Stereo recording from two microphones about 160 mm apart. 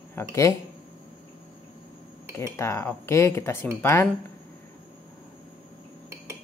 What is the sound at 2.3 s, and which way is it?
Speech, 15° left (ahead or behind).